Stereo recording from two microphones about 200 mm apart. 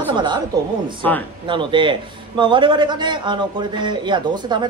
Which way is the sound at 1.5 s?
25° right (ahead or behind).